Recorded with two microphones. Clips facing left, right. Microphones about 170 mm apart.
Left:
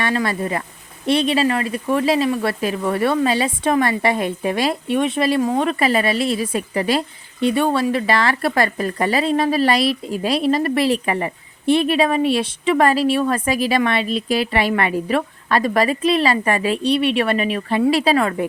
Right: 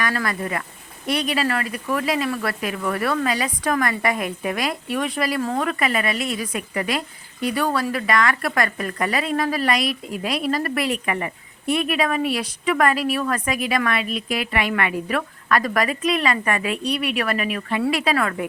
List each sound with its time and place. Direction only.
0.0 s speech: 25° left (ahead or behind)